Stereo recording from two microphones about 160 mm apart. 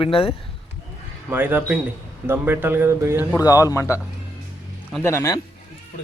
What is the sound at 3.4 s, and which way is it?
Speech, 20° left (ahead or behind).